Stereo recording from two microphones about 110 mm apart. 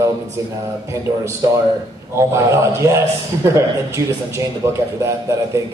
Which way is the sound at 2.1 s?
25° right (ahead or behind).